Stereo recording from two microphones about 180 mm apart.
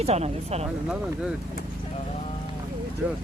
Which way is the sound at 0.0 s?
35° right (ahead or behind).